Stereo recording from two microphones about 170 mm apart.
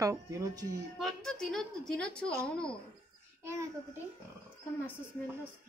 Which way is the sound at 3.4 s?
15° right (ahead or behind).